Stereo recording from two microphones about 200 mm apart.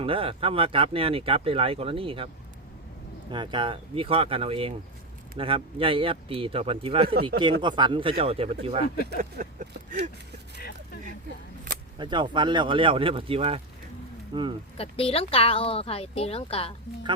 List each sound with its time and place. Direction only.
0.0 s speech: 25° right (ahead or behind)
3.3 s speech: 25° right (ahead or behind)
9.0 s a sound: 40° right (ahead or behind)
11.9 s speech: 25° right (ahead or behind)
14.8 s speech: 30° left (ahead or behind)